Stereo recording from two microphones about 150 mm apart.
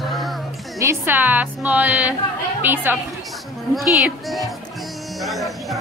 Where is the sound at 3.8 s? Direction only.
Centre (ahead or behind).